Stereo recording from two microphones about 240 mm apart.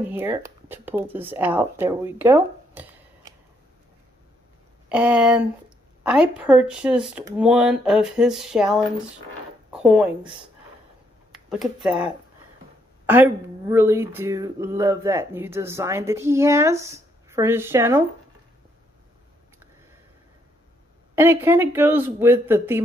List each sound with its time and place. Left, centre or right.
0.0 s speech: centre
4.8 s speech: centre
11.3 s speech: centre
13.0 s speech: centre
21.1 s speech: centre